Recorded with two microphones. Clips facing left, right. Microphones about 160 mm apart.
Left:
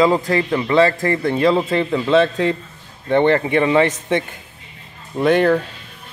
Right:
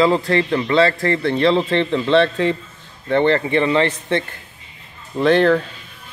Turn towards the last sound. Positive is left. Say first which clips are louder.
# even
turn(degrees=10)  # may be behind; listen again after turning